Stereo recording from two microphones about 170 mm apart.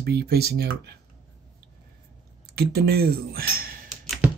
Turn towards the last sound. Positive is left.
turn(degrees=0)  # may be behind; listen again after turning